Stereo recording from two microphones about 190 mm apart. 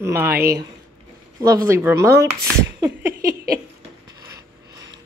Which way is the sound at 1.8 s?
15° right (ahead or behind).